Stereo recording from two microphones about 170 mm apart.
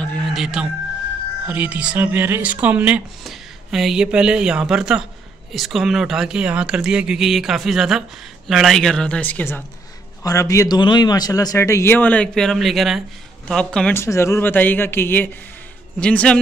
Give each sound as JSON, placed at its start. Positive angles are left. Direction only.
{"t": 0.0, "sound": "a sound", "side_deg": 5}
{"t": 1.5, "sound": "a man's voice", "side_deg": -10}
{"t": 14.0, "sound": "a man's voice", "side_deg": 15}